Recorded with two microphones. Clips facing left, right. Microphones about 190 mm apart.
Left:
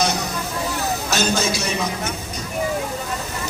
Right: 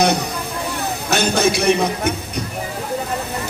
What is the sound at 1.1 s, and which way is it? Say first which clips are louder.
A man's voice: right 6 dB; 60° right (ahead or behind).